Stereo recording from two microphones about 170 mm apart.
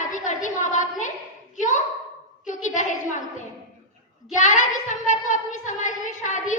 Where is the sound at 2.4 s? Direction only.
50° left (ahead or behind).